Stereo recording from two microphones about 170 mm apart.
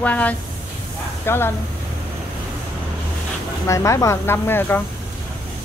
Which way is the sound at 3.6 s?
15° left (ahead or behind).